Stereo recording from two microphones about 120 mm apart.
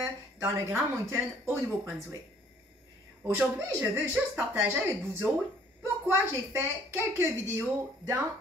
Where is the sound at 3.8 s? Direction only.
15° right (ahead or behind).